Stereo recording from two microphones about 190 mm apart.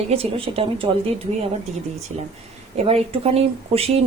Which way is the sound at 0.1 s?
30° right (ahead or behind).